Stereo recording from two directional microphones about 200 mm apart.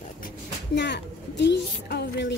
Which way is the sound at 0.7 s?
60° left (ahead or behind).